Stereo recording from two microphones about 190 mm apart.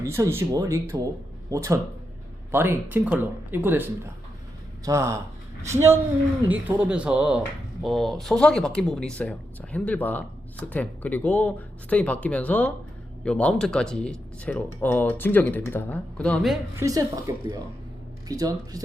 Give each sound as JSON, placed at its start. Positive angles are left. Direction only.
{"t": 0.0, "sound": "speech", "side_deg": -15}
{"t": 6.5, "sound": "speech", "side_deg": -10}
{"t": 16.7, "sound": "speech", "side_deg": -15}